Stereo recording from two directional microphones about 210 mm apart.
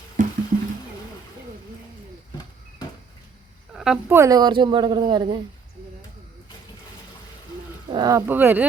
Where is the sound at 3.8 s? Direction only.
5° right (ahead or behind).